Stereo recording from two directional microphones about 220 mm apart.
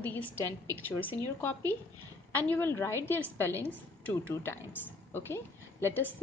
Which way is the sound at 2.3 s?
10° left (ahead or behind).